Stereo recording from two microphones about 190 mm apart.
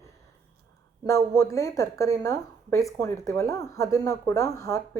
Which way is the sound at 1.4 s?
15° left (ahead or behind).